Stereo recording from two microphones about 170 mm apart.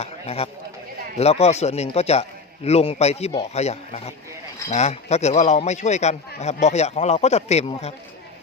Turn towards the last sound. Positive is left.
turn(degrees=40)  # may be behind; listen again after turning